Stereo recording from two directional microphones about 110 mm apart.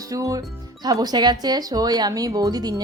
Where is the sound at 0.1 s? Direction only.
30° right (ahead or behind).